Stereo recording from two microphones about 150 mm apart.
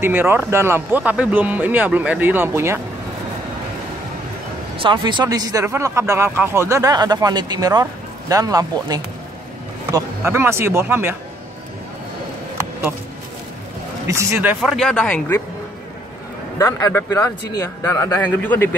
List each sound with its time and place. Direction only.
0.0 s speech: 15° right (ahead or behind)
4.7 s speech: 35° right (ahead or behind); by 11.1 s 15° right (ahead or behind)
14.0 s speech: 20° right (ahead or behind)
14.6 s speech: centre (ahead or behind)
16.5 s speech: 20° left (ahead or behind)